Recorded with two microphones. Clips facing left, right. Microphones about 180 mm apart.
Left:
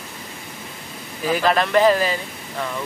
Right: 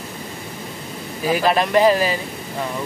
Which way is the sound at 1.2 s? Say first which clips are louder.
Right 1 dB; 10° right (ahead or behind).